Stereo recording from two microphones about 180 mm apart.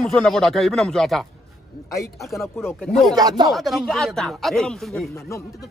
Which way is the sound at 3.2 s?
20° right (ahead or behind).